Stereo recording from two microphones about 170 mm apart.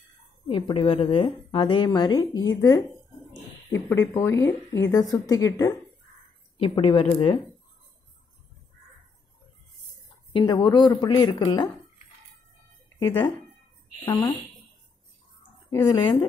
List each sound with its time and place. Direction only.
0.5 s a woman's voice: 30° left (ahead or behind)
4.1 s a woman's voice: 15° left (ahead or behind)
6.6 s speech: 30° left (ahead or behind)
10.3 s a woman's voice: 25° left (ahead or behind)
14.0 s a woman's voice: 25° left (ahead or behind)
15.7 s a woman's voice: 25° left (ahead or behind)